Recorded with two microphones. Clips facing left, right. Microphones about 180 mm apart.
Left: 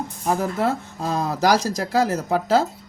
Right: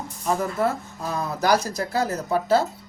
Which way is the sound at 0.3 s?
90° left.